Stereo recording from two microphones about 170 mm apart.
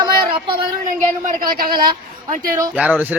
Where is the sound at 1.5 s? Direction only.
60° right (ahead or behind).